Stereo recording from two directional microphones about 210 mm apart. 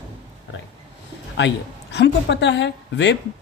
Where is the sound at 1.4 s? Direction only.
55° left (ahead or behind).